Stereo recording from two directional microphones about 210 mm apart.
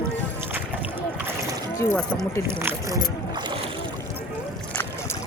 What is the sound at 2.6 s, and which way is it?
Speech, 15° right (ahead or behind).